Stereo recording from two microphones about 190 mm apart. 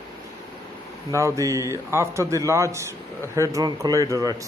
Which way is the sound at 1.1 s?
15° right (ahead or behind).